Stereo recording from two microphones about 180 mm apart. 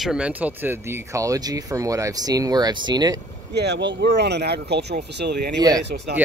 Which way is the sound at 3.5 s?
70° right (ahead or behind).